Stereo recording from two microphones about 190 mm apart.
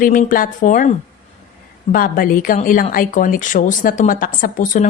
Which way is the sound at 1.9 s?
50° left (ahead or behind).